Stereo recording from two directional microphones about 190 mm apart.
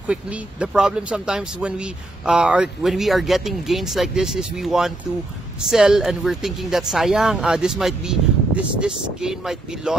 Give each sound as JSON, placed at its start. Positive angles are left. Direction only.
{"t": 0.0, "sound": "speech", "side_deg": -5}